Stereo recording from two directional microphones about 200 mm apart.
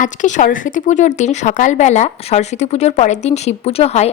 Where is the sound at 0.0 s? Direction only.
40° left (ahead or behind).